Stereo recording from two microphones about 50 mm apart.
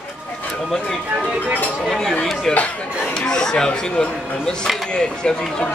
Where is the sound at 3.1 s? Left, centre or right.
Centre.